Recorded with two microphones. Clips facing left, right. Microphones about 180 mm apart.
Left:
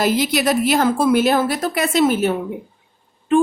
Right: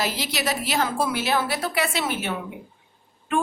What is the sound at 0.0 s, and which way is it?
A woman's voice, 50° left (ahead or behind).